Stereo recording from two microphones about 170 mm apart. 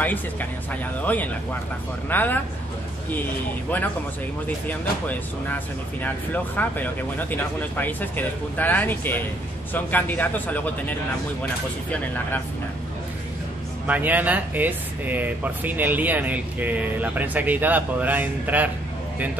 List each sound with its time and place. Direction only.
0.0 s speech: 10° left (ahead or behind)
6.0 s speech: 10° left (ahead or behind)
13.8 s speech: 10° right (ahead or behind)